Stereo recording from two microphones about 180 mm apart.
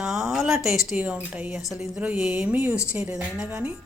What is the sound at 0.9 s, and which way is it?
Speech, 5° right (ahead or behind).